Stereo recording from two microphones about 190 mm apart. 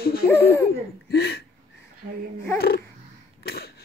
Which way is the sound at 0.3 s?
10° left (ahead or behind).